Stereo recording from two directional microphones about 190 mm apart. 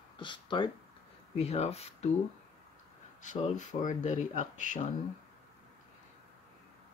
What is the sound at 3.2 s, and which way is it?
Speech, 40° left (ahead or behind).